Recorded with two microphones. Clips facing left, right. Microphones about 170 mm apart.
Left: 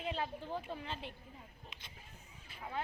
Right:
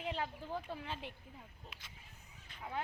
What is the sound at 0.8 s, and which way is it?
Speech, 10° right (ahead or behind).